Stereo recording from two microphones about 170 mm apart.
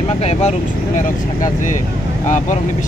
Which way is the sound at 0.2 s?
40° left (ahead or behind).